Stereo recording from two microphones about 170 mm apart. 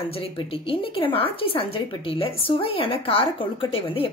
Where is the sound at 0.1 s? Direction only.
35° left (ahead or behind).